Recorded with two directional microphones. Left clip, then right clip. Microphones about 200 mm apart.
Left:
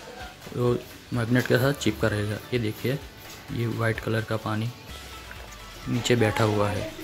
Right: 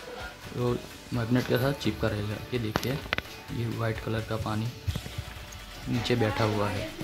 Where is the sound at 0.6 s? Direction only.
5° left (ahead or behind).